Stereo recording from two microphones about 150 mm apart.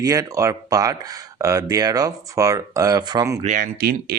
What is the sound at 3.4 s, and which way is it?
Speech, 65° right (ahead or behind).